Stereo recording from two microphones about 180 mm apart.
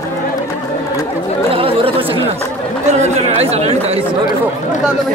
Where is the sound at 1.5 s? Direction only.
30° right (ahead or behind).